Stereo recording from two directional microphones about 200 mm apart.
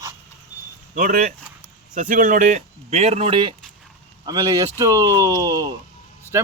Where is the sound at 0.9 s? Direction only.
40° right (ahead or behind).